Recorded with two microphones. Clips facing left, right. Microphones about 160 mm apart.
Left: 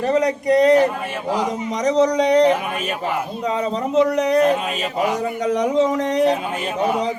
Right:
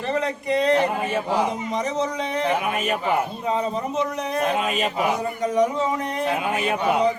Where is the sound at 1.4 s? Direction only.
90° left.